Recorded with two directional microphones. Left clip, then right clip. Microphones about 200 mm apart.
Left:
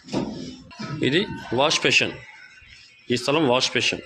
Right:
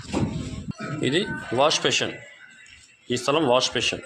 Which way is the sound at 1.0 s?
15° left (ahead or behind).